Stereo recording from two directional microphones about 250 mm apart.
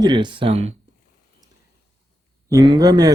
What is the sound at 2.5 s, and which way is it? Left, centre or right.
Speech, centre.